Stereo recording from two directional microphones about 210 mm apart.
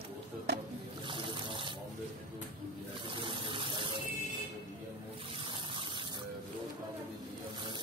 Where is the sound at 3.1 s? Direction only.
25° right (ahead or behind).